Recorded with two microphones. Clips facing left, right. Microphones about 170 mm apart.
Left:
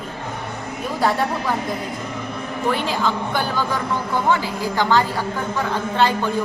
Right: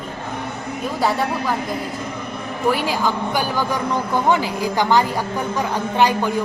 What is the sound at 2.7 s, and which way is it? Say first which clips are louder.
A man's voice: right 2 dB; 10° right (ahead or behind).